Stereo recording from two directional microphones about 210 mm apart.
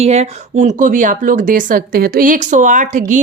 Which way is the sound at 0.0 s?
30° right (ahead or behind).